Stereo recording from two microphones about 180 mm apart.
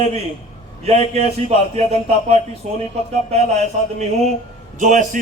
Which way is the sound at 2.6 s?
40° right (ahead or behind).